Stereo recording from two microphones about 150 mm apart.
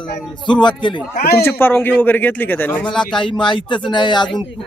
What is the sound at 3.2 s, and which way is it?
Speech, 35° left (ahead or behind).